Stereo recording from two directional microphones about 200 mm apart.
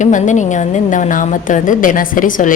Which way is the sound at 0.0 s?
40° left (ahead or behind).